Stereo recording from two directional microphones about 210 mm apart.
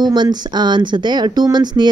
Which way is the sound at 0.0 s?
20° right (ahead or behind).